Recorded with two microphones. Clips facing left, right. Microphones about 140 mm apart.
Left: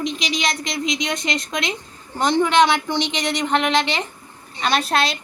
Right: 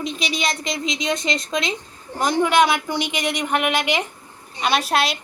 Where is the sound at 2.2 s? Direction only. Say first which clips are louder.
Left 1 dB; 5° right (ahead or behind).